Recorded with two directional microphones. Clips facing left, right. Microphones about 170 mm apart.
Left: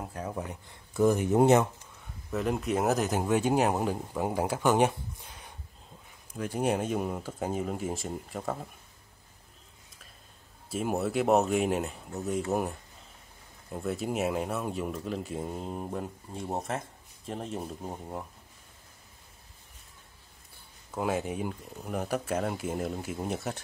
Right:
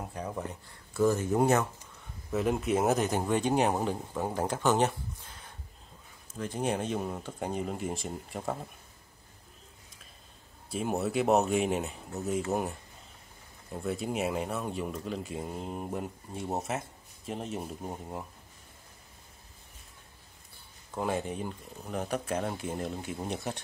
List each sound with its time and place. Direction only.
0.0 s speech: 5° left (ahead or behind); by 1.7 s 20° left (ahead or behind)
2.3 s speech: centre (ahead or behind)
10.7 s speech: centre (ahead or behind)
20.9 s speech: 5° left (ahead or behind)